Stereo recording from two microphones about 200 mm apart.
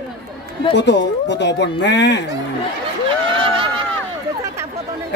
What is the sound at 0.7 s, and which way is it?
Speech, 60° left (ahead or behind).